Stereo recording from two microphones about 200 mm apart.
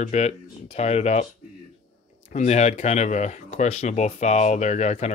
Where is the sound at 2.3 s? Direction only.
35° left (ahead or behind).